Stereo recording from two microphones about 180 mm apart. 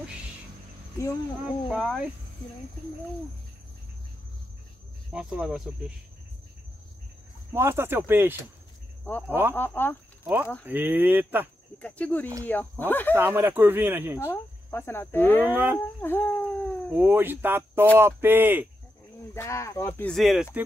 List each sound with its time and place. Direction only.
1.4 s speech: centre (ahead or behind)
5.1 s speech: 5° right (ahead or behind)
7.5 s speech: 15° right (ahead or behind)
9.6 s speech: 10° left (ahead or behind)
10.7 s speech: 10° right (ahead or behind)
11.8 s speech: 10° left (ahead or behind)
13.1 s speech: 15° right (ahead or behind)
14.1 s speech: 15° left (ahead or behind)
15.4 s speech: 10° right (ahead or behind)
16.0 s cat: 10° left (ahead or behind)
16.9 s speech: 10° right (ahead or behind)
19.3 s speech: 15° left (ahead or behind)
20.1 s speech: centre (ahead or behind)